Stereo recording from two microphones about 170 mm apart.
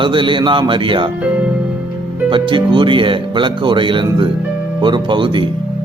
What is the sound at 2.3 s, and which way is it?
Speech, 30° right (ahead or behind).